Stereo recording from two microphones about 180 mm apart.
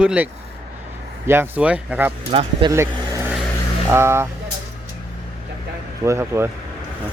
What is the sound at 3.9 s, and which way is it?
Speech, 15° right (ahead or behind).